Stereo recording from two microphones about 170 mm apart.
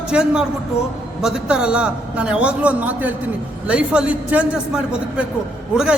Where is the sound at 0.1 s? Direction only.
5° right (ahead or behind).